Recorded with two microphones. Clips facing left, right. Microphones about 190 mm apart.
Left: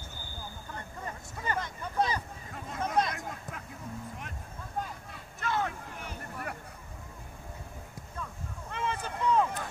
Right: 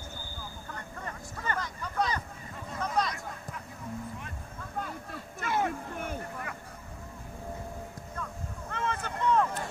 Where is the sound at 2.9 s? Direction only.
55° left (ahead or behind).